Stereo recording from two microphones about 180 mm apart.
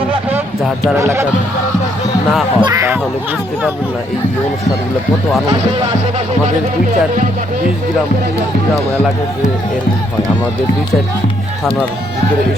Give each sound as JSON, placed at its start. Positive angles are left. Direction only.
{"t": 0.9, "sound": "speech", "side_deg": -15}
{"t": 2.6, "sound": "speech", "side_deg": -20}